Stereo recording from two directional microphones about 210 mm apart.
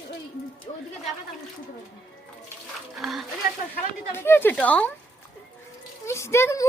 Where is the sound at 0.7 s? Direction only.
30° left (ahead or behind).